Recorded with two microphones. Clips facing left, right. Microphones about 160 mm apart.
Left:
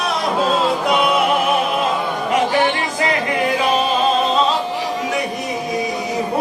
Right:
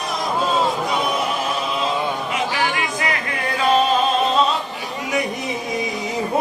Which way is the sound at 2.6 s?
30° left (ahead or behind).